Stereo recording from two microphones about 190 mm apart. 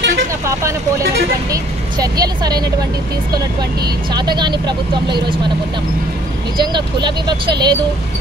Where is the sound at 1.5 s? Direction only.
20° right (ahead or behind).